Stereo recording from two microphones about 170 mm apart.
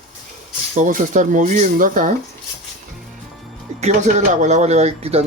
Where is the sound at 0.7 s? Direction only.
50° right (ahead or behind).